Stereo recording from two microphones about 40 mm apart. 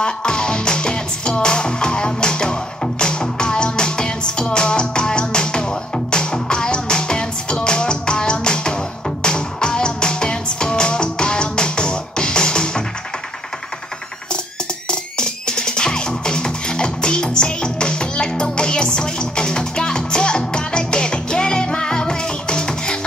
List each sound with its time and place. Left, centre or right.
0.0 s music: left
14.9 s music: left